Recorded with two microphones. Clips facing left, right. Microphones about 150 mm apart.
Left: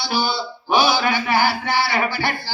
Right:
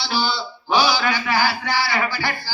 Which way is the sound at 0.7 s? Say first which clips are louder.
Left 1 dB; 20° left (ahead or behind).